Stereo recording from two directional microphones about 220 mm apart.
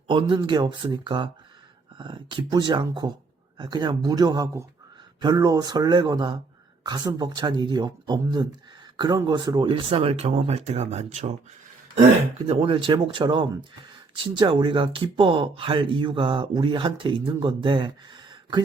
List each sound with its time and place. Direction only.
0.1 s speech: 20° right (ahead or behind)
12.5 s speech: 25° right (ahead or behind)